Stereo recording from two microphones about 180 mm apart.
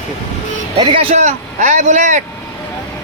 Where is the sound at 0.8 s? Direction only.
30° right (ahead or behind).